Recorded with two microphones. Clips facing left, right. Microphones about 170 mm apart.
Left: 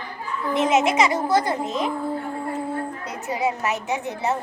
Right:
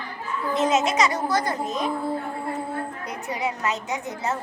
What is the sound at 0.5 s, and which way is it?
A woman's voice, 25° left (ahead or behind).